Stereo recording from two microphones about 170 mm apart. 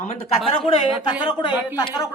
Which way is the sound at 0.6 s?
30° left (ahead or behind).